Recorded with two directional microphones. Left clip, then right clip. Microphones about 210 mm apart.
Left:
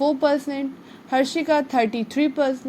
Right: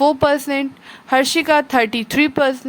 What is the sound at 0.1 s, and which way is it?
Speech, 30° right (ahead or behind).